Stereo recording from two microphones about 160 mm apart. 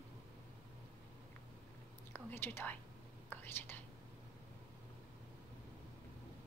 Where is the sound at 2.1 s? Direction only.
15° left (ahead or behind).